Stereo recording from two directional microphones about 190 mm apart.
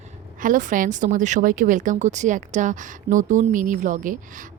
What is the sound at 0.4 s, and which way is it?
A woman's voice, 45° right (ahead or behind).